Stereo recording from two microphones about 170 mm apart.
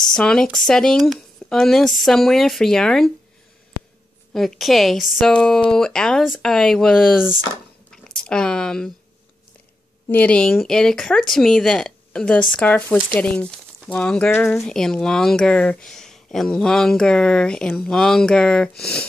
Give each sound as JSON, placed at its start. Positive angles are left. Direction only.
{"t": 0.1, "sound": "speech", "side_deg": 5}
{"t": 4.3, "sound": "speech", "side_deg": 0}
{"t": 10.0, "sound": "speech", "side_deg": 10}